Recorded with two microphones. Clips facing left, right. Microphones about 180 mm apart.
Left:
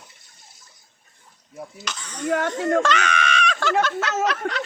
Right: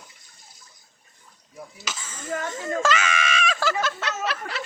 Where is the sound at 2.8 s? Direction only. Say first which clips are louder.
Left 2 dB; 5° right (ahead or behind).